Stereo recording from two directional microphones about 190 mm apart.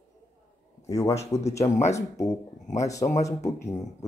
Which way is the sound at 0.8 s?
15° left (ahead or behind).